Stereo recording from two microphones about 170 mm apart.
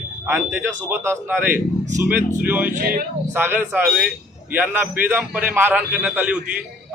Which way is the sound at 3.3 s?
10° right (ahead or behind).